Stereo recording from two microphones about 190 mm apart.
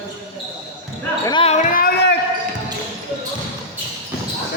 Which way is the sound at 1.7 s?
55° left (ahead or behind).